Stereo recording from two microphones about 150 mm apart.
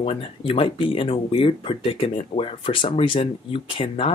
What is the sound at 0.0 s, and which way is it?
Speech, 40° left (ahead or behind).